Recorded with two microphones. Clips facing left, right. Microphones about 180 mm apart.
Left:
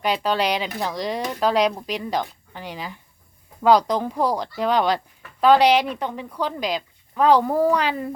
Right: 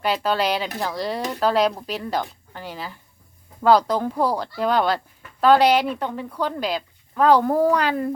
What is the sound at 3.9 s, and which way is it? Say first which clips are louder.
Speech: even; 5° right (ahead or behind).